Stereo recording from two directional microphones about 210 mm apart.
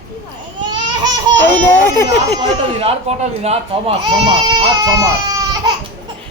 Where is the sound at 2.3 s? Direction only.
30° right (ahead or behind).